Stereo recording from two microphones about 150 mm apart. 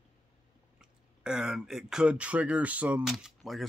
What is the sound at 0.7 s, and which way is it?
Speech, 5° right (ahead or behind).